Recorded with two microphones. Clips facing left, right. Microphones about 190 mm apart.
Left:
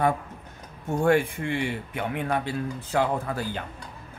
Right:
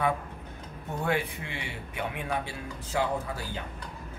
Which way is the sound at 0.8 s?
50° left (ahead or behind).